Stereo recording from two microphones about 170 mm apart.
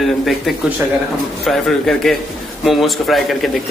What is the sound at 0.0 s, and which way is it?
Speech, centre (ahead or behind).